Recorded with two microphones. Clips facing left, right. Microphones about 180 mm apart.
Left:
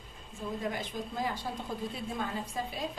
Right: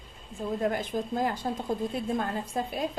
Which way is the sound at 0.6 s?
55° right (ahead or behind).